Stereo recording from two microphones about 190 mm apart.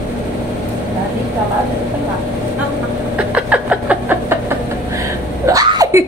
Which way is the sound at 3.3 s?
5° right (ahead or behind).